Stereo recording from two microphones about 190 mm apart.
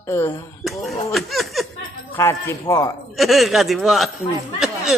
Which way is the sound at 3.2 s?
Centre (ahead or behind).